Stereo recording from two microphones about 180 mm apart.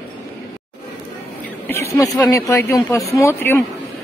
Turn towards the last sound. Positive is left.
turn(degrees=15)  # may be behind; listen again after turning